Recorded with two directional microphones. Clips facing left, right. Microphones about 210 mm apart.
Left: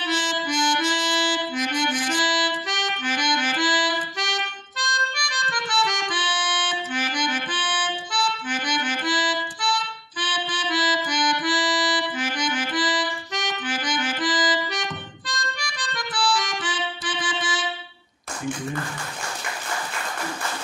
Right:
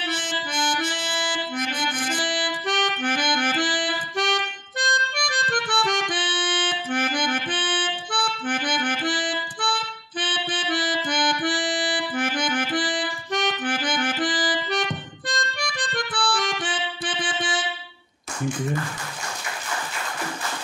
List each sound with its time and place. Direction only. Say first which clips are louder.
0.0 s music: left 3 dB; 55° right (ahead or behind)